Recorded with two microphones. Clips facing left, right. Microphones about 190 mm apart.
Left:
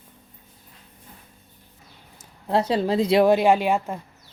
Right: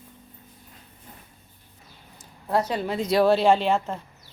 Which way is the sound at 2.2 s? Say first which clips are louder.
Left 2 dB; 25° left (ahead or behind).